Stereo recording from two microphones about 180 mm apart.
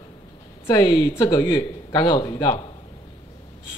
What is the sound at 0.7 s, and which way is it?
Speech, 20° left (ahead or behind).